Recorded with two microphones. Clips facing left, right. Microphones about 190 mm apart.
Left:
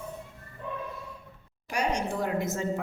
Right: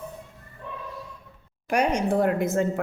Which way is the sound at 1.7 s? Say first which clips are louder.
Right 6 dB; 55° right (ahead or behind).